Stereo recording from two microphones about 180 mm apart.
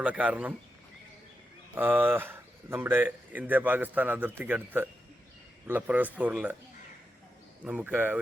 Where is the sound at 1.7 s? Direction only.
10° right (ahead or behind).